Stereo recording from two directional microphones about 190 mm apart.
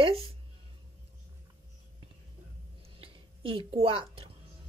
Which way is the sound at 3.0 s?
30° right (ahead or behind).